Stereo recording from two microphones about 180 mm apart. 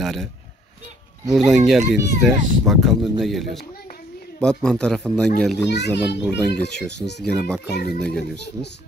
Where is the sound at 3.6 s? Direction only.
55° left (ahead or behind).